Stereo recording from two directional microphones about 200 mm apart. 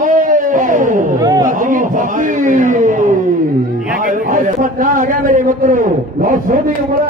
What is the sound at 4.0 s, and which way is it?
A man's voice, 40° right (ahead or behind).